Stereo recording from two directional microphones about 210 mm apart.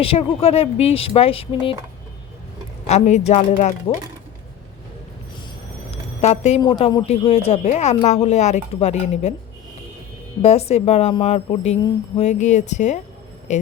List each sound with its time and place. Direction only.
0.0 s speech: 25° left (ahead or behind)
2.8 s speech: 30° left (ahead or behind)
6.2 s speech: 30° left (ahead or behind)
6.6 s speech: 20° left (ahead or behind)
10.4 s speech: 30° left (ahead or behind)